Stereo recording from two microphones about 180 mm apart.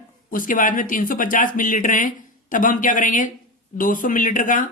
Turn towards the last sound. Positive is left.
turn(degrees=45)  # may be behind; listen again after turning